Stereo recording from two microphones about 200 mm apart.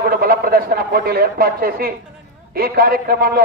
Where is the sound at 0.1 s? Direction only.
50° right (ahead or behind).